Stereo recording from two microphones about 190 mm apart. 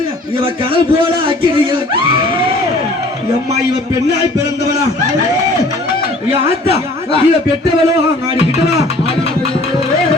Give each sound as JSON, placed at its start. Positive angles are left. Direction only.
{"t": 1.5, "sound": "speech", "side_deg": -25}
{"t": 6.7, "sound": "speech", "side_deg": 30}